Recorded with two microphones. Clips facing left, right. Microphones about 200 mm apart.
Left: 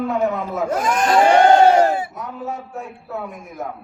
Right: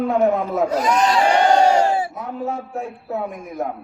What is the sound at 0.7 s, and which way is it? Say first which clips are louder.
Speech: left 2 dB; 50° left (ahead or behind).